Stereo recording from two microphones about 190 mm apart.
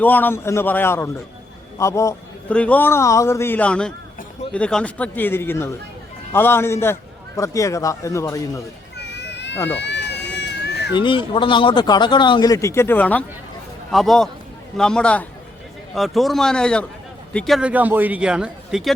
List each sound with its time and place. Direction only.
0.0 s a man's voice: 10° left (ahead or behind)
9.0 s children playing: 65° left (ahead or behind)
9.7 s a sound: 65° left (ahead or behind)
10.9 s a man's voice: 25° left (ahead or behind); by 18.9 s centre (ahead or behind)